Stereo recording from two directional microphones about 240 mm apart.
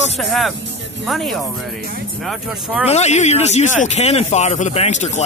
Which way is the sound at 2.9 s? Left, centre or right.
Left.